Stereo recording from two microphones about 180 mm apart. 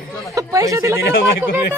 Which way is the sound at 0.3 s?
20° right (ahead or behind).